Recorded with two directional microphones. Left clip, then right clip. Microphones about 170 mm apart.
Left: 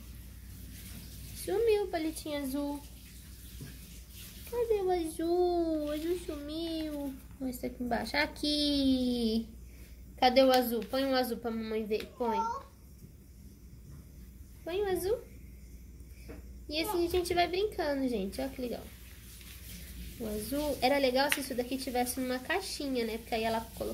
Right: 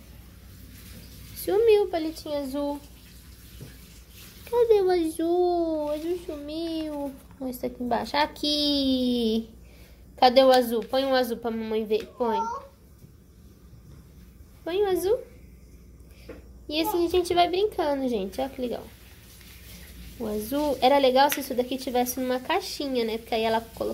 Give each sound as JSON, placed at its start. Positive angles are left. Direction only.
{"t": 1.4, "sound": "a sound", "side_deg": -20}
{"t": 2.2, "sound": "a child's voice", "side_deg": 0}
{"t": 4.8, "sound": "a woman's voice", "side_deg": -20}
{"t": 5.1, "sound": "a child's voice", "side_deg": 0}
{"t": 14.6, "sound": "a woman's voice", "side_deg": -20}
{"t": 16.6, "sound": "a woman's voice", "side_deg": -15}
{"t": 20.2, "sound": "speech", "side_deg": -20}